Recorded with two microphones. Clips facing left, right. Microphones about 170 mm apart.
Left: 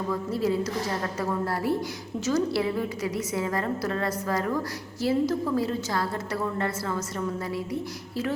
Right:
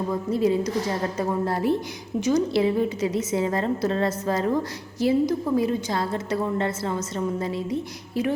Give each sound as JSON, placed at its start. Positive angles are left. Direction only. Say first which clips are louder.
{"t": 0.1, "sound": "a woman's voice", "louder": "right 4 dB", "side_deg": -20}